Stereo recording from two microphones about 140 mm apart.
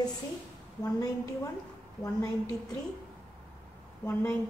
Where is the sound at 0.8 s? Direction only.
25° left (ahead or behind).